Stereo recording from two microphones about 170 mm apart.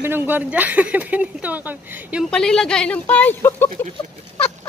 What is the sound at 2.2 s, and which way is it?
A woman's voice, 5° left (ahead or behind).